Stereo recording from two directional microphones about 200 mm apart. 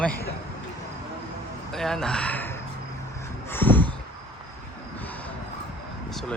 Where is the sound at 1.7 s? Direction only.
Centre (ahead or behind).